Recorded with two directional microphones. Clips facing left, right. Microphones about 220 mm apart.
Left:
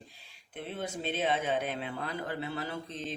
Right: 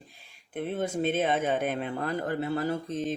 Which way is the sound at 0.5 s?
50° right (ahead or behind).